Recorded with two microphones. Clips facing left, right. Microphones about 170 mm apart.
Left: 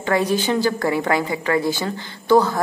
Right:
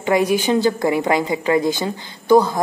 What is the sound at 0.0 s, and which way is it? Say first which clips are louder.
A woman's voice: right 3 dB; 15° right (ahead or behind).